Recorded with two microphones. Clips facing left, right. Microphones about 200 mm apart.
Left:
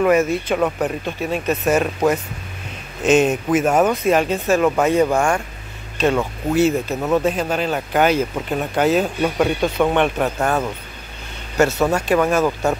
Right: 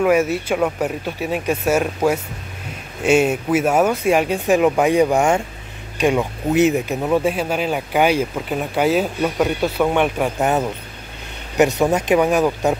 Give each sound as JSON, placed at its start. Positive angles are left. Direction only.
{"t": 0.0, "sound": "speech", "side_deg": -10}
{"t": 10.4, "sound": "speech", "side_deg": -20}